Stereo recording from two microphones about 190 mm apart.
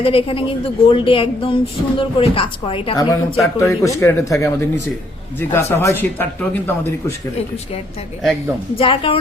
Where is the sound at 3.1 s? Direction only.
15° left (ahead or behind).